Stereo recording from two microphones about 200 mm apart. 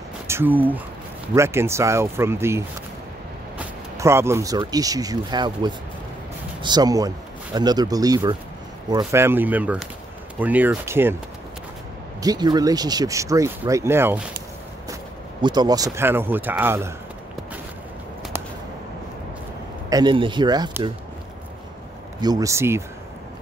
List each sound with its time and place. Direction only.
0.3 s speech: 10° right (ahead or behind)
12.2 s speech: 20° right (ahead or behind)
15.4 s speech: 20° right (ahead or behind)
19.9 s speech: 20° right (ahead or behind)
22.2 s speech: 20° right (ahead or behind)